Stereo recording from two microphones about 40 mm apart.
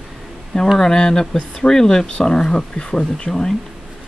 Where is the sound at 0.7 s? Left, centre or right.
Centre.